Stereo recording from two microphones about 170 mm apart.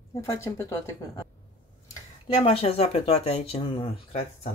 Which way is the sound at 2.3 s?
30° left (ahead or behind).